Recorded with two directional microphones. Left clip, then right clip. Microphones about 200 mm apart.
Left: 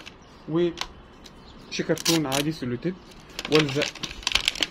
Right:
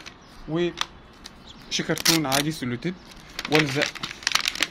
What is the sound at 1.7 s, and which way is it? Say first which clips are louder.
Speech: right 2 dB; 60° right (ahead or behind).